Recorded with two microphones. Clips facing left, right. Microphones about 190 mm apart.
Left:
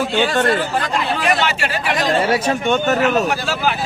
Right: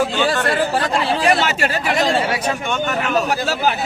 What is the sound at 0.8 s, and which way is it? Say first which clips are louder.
Speech: right 2 dB; 35° right (ahead or behind).